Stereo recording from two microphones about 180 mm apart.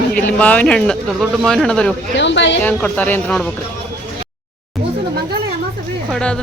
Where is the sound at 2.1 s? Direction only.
85° left.